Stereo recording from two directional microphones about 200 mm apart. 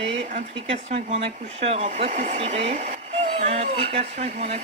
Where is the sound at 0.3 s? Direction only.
35° right (ahead or behind).